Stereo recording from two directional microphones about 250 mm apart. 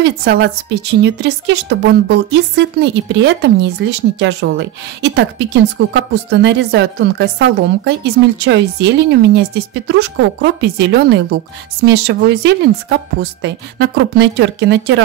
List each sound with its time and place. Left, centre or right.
0.0 s a woman's voice: right